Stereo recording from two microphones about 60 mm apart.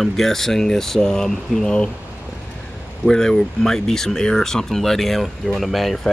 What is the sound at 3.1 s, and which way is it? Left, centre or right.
Speech, centre.